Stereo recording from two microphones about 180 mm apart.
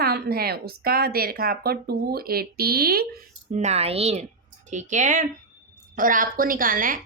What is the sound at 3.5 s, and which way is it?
A woman's voice, 40° right (ahead or behind).